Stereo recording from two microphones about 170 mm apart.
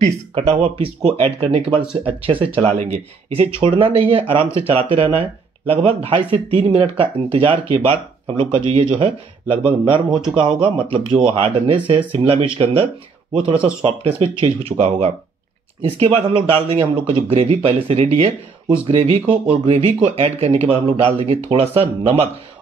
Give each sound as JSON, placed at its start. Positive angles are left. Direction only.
{"t": 0.0, "sound": "speech", "side_deg": -40}